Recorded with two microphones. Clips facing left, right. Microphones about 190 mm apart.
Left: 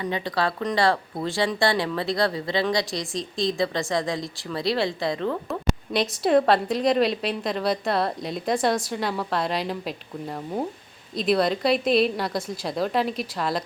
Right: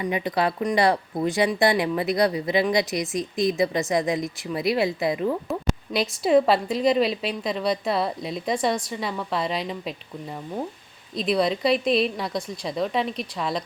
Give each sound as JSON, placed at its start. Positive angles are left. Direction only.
{"t": 0.0, "sound": "speech", "side_deg": -15}
{"t": 5.5, "sound": "a woman's voice", "side_deg": 0}